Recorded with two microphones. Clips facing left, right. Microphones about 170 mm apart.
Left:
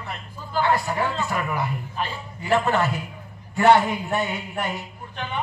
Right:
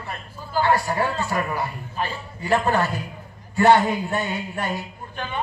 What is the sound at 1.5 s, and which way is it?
Speech, 20° left (ahead or behind).